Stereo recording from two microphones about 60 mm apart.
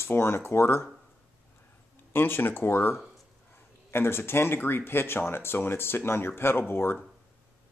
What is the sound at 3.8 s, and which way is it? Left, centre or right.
Speech, left.